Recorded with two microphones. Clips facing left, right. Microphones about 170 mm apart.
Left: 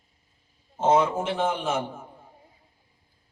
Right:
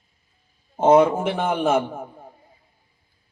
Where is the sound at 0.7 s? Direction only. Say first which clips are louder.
Right 6 dB; 60° right (ahead or behind).